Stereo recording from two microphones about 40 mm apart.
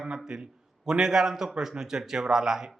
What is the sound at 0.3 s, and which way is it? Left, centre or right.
A man's voice, centre.